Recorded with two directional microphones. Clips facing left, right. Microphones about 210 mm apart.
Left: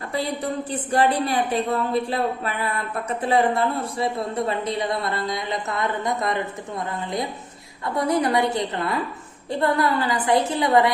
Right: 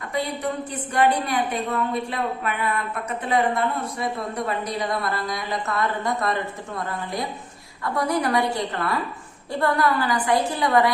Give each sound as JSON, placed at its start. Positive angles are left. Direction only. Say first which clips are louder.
{"t": 0.1, "sound": "a woman's voice", "louder": "even", "side_deg": 35}
{"t": 7.9, "sound": "a woman's voice", "louder": "left 2 dB", "side_deg": 20}